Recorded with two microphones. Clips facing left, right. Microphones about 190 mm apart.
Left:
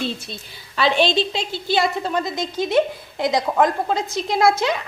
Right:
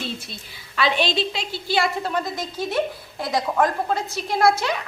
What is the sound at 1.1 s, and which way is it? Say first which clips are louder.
A woman's voice: left 3 dB; 25° left (ahead or behind).